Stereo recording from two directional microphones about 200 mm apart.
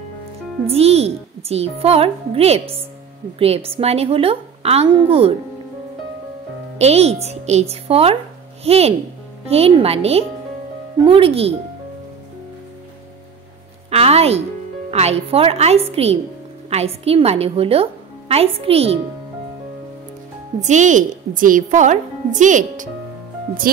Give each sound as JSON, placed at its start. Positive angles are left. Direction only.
{"t": 0.7, "sound": "a woman's voice", "side_deg": -30}
{"t": 6.8, "sound": "a woman's voice", "side_deg": -30}
{"t": 13.8, "sound": "a woman's voice", "side_deg": -30}
{"t": 20.6, "sound": "a woman's voice", "side_deg": -40}